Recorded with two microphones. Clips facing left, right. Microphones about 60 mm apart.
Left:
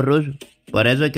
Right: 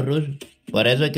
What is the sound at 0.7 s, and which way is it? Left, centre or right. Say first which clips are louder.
Speech: left 2 dB; left.